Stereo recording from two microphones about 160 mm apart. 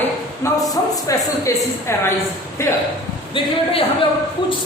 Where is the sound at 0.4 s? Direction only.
15° left (ahead or behind).